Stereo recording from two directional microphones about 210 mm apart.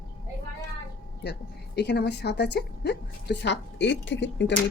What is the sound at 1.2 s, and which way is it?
A woman's voice, 50° left (ahead or behind).